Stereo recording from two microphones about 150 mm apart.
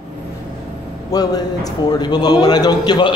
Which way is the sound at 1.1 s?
25° left (ahead or behind).